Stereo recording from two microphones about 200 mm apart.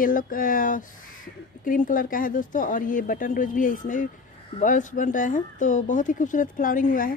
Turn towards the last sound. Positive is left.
turn(degrees=45)  # may be behind; listen again after turning